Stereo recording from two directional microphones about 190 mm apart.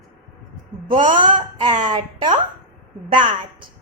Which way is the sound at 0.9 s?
25° right (ahead or behind).